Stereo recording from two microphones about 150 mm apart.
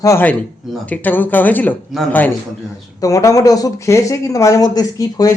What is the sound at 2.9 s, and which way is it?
Speech, 20° left (ahead or behind).